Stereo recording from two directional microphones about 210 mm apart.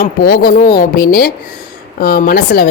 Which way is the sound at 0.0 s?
45° left (ahead or behind).